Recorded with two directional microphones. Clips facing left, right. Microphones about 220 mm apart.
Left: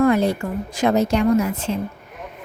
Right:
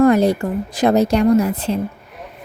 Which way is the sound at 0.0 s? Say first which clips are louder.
Right 4 dB; 40° right (ahead or behind).